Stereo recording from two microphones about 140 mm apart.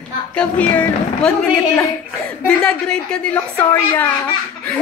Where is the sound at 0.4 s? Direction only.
10° left (ahead or behind).